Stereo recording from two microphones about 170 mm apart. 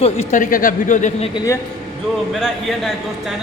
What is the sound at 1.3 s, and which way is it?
Speech, 20° left (ahead or behind).